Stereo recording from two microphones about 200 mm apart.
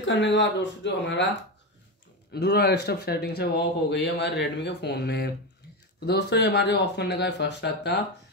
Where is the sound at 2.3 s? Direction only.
55° left (ahead or behind).